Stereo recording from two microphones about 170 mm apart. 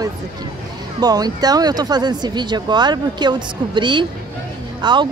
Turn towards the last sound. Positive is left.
turn(degrees=-25)  # may be behind; listen again after turning